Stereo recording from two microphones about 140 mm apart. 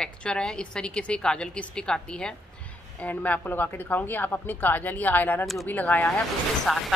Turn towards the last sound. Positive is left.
turn(degrees=0)  # may be behind; listen again after turning